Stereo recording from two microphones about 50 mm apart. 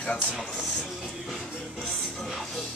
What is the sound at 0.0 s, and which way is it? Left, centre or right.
Speech, left.